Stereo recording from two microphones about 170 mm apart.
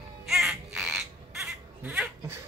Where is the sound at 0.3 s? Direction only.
Centre (ahead or behind).